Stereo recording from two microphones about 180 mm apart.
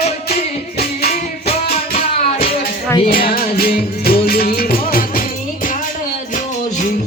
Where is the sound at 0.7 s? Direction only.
60° left (ahead or behind).